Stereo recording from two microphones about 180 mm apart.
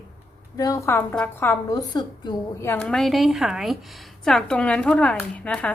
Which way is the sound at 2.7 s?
5° left (ahead or behind).